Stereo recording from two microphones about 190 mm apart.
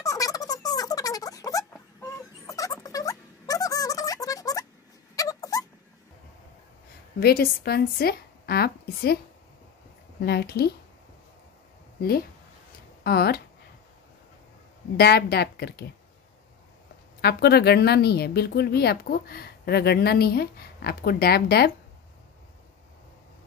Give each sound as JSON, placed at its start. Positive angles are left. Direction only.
{"t": 0.0, "sound": "rodents", "side_deg": 15}
{"t": 5.1, "sound": "dog", "side_deg": 20}
{"t": 7.2, "sound": "a woman's voice", "side_deg": 55}
{"t": 10.2, "sound": "a woman's voice", "side_deg": 55}
{"t": 12.0, "sound": "a woman's voice", "side_deg": 50}
{"t": 15.0, "sound": "a woman's voice", "side_deg": 55}
{"t": 17.2, "sound": "a woman's voice", "side_deg": 60}